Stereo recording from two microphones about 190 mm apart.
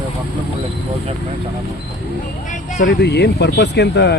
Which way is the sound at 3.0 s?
60° left (ahead or behind).